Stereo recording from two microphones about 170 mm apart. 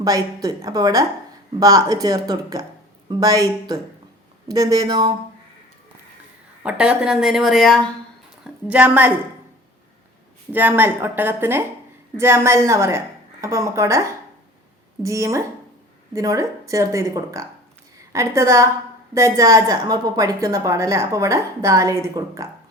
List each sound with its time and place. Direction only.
0.0 s a woman's voice: 20° right (ahead or behind)
6.6 s a woman's voice: 5° right (ahead or behind)
10.5 s a woman's voice: 10° right (ahead or behind)